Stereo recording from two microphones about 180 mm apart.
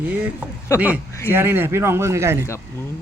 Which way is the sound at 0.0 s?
10° right (ahead or behind).